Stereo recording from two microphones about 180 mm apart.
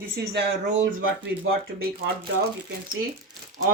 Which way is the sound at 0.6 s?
90° right.